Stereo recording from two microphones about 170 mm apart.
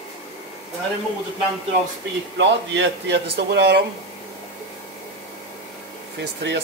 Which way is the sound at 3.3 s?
80° right.